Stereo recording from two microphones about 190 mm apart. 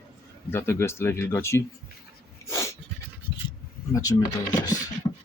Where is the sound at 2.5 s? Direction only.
15° left (ahead or behind).